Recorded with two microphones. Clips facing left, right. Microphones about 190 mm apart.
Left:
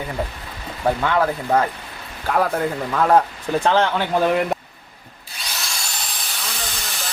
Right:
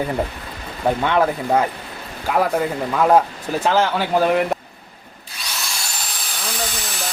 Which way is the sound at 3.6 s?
5° right (ahead or behind).